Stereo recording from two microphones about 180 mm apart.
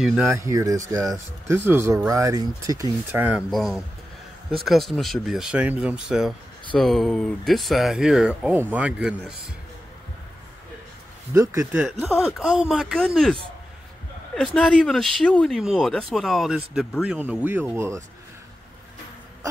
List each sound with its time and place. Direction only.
0.0 s speech: 5° right (ahead or behind)
0.3 s speech: 15° right (ahead or behind)
3.2 s speech: 10° right (ahead or behind)
11.3 s speech: 15° right (ahead or behind)
12.0 s speech: centre (ahead or behind)